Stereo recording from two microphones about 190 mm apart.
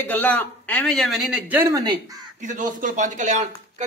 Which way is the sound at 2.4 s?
40° right (ahead or behind).